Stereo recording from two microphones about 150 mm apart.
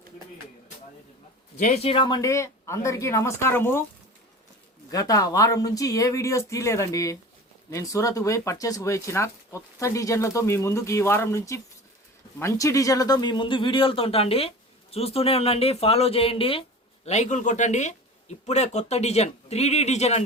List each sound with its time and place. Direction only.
1.5 s speech: 50° left (ahead or behind); by 3.8 s 15° left (ahead or behind)
4.9 s speech: 25° left (ahead or behind)
17.1 s speech: 50° left (ahead or behind)